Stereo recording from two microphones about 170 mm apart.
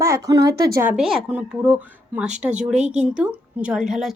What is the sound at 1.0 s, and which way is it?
A woman's voice, centre (ahead or behind).